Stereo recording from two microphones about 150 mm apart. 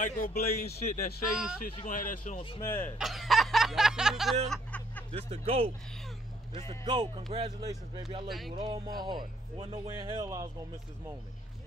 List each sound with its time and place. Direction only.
0.0 s speech: 80° left
1.3 s speech: 5° right (ahead or behind)
1.8 s speech: 65° left (ahead or behind)
2.6 s speech: 15° left (ahead or behind)
3.0 s a sound: centre (ahead or behind)
4.5 s a sound: 10° left (ahead or behind)
5.1 s speech: 40° right (ahead or behind)
6.8 s speech: 30° right (ahead or behind)
8.3 s speech: centre (ahead or behind)
8.5 s speech: 30° right (ahead or behind)